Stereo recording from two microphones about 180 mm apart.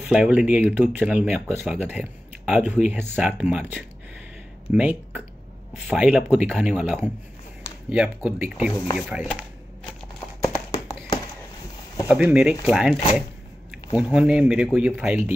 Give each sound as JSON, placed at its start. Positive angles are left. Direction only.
{"t": 0.0, "sound": "speech", "side_deg": -5}
{"t": 10.4, "sound": "a sound", "side_deg": 20}
{"t": 12.1, "sound": "speech", "side_deg": -5}